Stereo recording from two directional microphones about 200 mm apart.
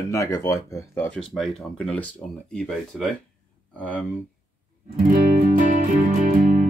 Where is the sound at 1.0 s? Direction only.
Centre (ahead or behind).